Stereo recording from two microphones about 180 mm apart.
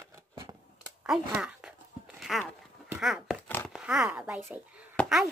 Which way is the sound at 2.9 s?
5° right (ahead or behind).